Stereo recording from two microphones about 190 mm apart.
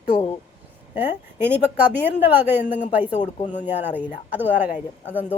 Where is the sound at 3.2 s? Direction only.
40° left (ahead or behind).